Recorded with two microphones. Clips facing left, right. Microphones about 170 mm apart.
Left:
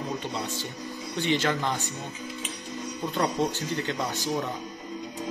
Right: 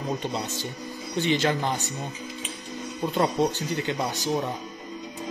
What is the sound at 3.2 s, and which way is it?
Speech, 15° right (ahead or behind).